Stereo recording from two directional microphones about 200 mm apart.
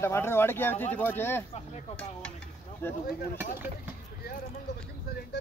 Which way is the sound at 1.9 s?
5° left (ahead or behind).